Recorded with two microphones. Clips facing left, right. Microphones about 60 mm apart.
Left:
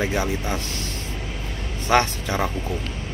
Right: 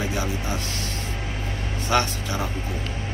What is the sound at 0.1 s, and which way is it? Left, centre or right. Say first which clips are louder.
Speech: left 3 dB; left.